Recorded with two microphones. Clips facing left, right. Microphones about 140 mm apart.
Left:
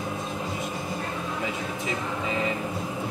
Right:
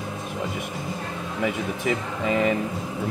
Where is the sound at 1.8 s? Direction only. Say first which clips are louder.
Right 5 dB; 65° right (ahead or behind).